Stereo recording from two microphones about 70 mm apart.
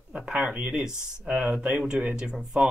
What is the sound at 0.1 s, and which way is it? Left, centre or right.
Speech, centre.